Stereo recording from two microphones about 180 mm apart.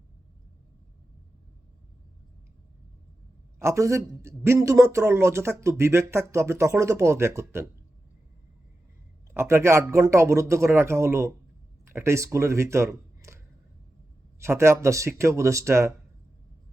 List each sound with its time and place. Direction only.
3.6 s a man's voice: 15° right (ahead or behind)
9.3 s a man's voice: 15° right (ahead or behind)